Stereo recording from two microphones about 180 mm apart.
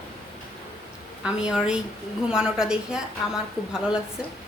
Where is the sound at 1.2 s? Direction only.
5° right (ahead or behind).